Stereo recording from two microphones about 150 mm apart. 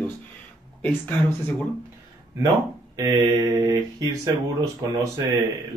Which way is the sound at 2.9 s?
20° right (ahead or behind).